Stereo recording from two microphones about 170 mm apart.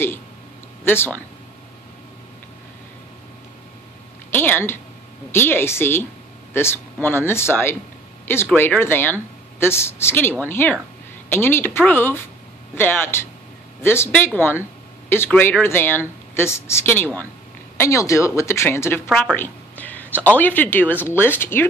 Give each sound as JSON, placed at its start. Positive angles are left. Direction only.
{"t": 0.8, "sound": "speech", "side_deg": 10}
{"t": 4.3, "sound": "speech", "side_deg": 15}